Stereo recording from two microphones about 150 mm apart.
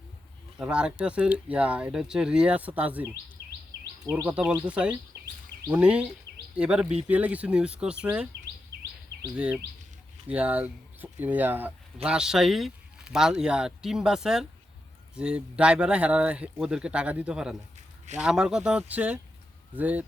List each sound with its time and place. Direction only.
0.6 s speech: 5° right (ahead or behind)
4.3 s speech: 10° right (ahead or behind)
9.3 s speech: 10° right (ahead or behind)
17.7 s a sound: 50° right (ahead or behind)
18.2 s speech: 5° right (ahead or behind)